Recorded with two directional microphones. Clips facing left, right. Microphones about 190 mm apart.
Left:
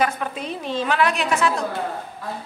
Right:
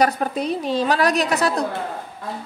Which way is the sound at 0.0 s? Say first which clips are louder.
Right 4 dB; 40° right (ahead or behind).